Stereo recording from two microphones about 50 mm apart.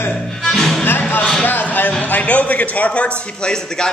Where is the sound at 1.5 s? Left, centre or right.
Left.